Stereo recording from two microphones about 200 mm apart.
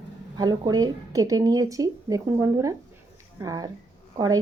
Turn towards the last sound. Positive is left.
turn(degrees=-15)  # may be behind; listen again after turning